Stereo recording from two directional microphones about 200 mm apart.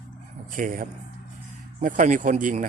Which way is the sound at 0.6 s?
45° right (ahead or behind).